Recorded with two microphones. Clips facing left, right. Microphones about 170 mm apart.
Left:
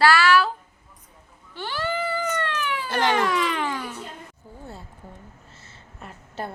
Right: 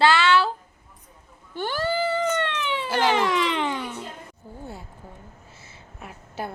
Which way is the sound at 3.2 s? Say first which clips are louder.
Right 1 dB; 20° right (ahead or behind).